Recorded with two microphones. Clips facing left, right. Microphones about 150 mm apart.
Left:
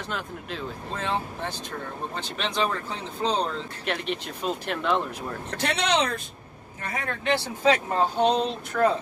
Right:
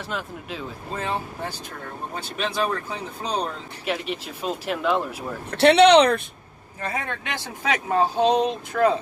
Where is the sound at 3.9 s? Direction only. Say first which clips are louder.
Right 2 dB; 5° right (ahead or behind).